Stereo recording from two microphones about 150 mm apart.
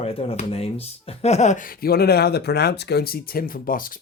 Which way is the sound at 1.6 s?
85° left.